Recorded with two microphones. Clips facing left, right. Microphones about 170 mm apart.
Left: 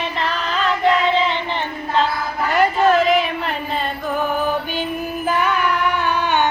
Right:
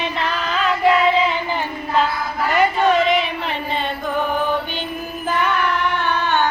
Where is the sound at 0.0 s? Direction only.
Centre (ahead or behind).